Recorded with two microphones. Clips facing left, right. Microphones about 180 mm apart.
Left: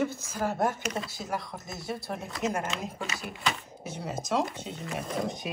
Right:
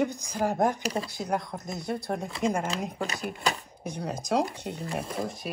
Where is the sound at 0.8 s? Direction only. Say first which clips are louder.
Right 3 dB; 35° right (ahead or behind).